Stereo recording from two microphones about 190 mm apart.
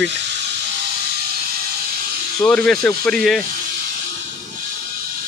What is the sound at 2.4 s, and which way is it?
Speech, 5° left (ahead or behind).